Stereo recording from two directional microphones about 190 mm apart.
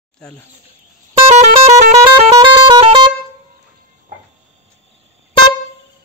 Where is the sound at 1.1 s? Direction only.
40° right (ahead or behind).